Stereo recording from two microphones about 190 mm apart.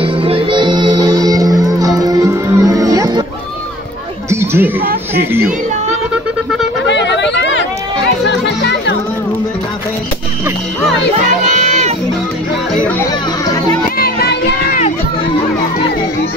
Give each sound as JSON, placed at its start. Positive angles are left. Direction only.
{"t": 0.0, "sound": "music", "side_deg": -30}
{"t": 4.3, "sound": "a sound", "side_deg": -15}
{"t": 5.1, "sound": "a child's voice", "side_deg": -10}
{"t": 6.9, "sound": "yodeling", "side_deg": 65}
{"t": 8.3, "sound": "music", "side_deg": 70}
{"t": 11.5, "sound": "music", "side_deg": -40}
{"t": 13.9, "sound": "music", "side_deg": 55}